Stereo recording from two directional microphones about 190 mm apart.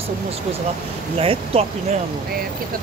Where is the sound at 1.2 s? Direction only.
30° right (ahead or behind).